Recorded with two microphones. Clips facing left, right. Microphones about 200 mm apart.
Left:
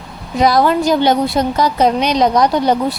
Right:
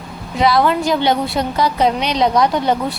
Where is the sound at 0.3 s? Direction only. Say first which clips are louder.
Left 2 dB; 45° left (ahead or behind).